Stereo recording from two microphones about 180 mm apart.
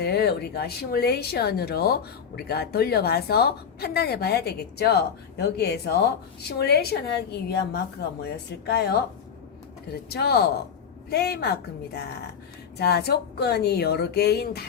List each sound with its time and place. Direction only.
0.0 s speech: 60° left (ahead or behind)